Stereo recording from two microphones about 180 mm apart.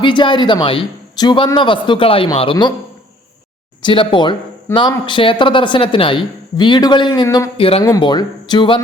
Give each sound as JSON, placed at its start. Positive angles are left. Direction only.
{"t": 0.0, "sound": "speech", "side_deg": 25}
{"t": 3.8, "sound": "speech", "side_deg": 30}